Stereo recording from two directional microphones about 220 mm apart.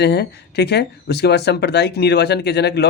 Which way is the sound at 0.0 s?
50° left (ahead or behind).